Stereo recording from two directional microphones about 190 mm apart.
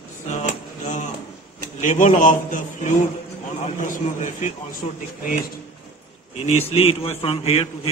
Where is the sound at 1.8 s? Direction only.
40° left (ahead or behind).